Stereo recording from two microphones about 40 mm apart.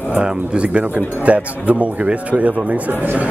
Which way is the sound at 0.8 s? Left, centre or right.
Right.